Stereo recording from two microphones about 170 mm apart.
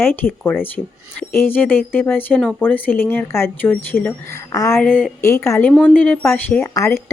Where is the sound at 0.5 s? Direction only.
75° right (ahead or behind).